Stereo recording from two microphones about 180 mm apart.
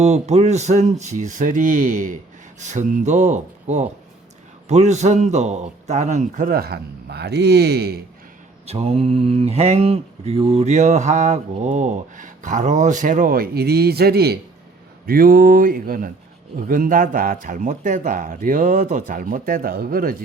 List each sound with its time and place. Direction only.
0.0 s mantra: 40° right (ahead or behind)
4.7 s a man's voice: 40° right (ahead or behind); by 8.0 s 60° right (ahead or behind)
8.6 s mantra: 35° right (ahead or behind); by 14.3 s 60° right (ahead or behind)
15.0 s a man's voice: 55° right (ahead or behind)